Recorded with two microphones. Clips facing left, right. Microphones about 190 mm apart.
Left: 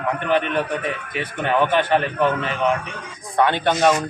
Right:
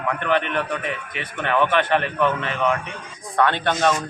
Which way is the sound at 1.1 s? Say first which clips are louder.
Left 1 dB; 35° left (ahead or behind).